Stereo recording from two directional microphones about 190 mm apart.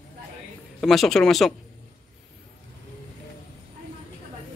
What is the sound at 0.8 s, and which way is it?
Speech, centre (ahead or behind).